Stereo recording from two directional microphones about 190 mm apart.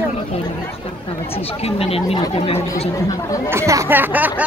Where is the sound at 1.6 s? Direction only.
30° left (ahead or behind).